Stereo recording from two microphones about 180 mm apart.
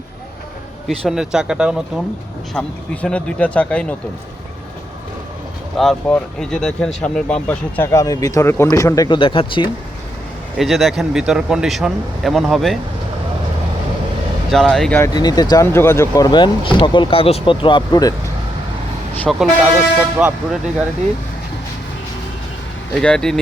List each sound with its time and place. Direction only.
0.9 s speech: centre (ahead or behind)
2.5 s speech: 5° left (ahead or behind)
5.7 s speech: centre (ahead or behind); by 9.6 s 30° left (ahead or behind)
10.6 s speech: centre (ahead or behind)
14.5 s speech: centre (ahead or behind)
15.0 s speech: 20° left (ahead or behind)
19.3 s speech: 5° right (ahead or behind)
23.0 s speech: 5° left (ahead or behind)